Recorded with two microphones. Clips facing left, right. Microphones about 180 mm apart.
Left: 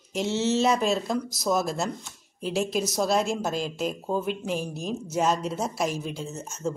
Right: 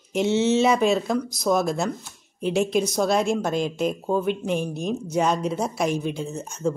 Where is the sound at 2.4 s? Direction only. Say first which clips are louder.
Right 5 dB; 60° right (ahead or behind).